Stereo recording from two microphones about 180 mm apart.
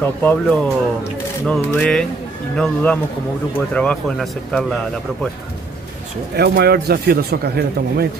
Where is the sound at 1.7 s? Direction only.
5° left (ahead or behind).